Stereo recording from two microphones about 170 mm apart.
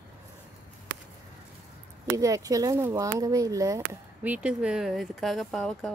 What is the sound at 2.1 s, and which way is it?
Speech, 20° right (ahead or behind).